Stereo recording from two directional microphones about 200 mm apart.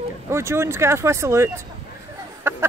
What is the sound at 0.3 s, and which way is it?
Speech, 15° right (ahead or behind).